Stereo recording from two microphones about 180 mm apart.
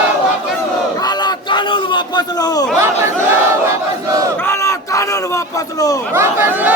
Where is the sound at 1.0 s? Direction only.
25° left (ahead or behind).